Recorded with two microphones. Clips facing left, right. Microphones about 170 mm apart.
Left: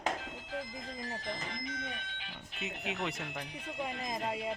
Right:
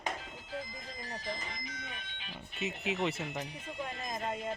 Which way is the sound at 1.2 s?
60° left (ahead or behind).